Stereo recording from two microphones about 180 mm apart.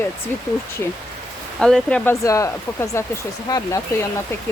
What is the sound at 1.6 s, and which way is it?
Speech, 5° left (ahead or behind).